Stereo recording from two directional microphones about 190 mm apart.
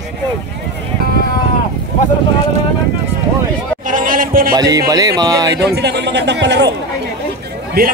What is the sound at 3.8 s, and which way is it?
Music, 45° right (ahead or behind).